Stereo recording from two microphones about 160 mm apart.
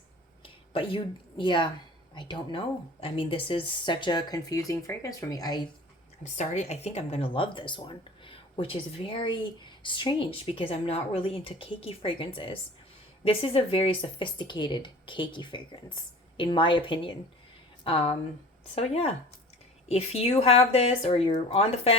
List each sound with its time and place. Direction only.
0.7 s a woman's voice: 35° left (ahead or behind)
6.2 s speech: 45° left (ahead or behind)